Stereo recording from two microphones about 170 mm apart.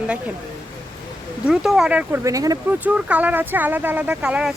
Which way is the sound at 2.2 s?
20° right (ahead or behind).